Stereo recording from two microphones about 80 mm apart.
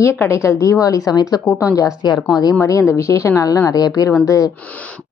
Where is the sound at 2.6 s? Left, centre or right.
Left.